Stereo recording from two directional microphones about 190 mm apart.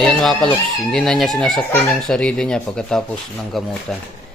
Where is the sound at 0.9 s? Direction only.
Centre (ahead or behind).